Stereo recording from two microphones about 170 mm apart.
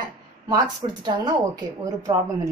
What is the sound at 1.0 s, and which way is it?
Speech, 25° right (ahead or behind).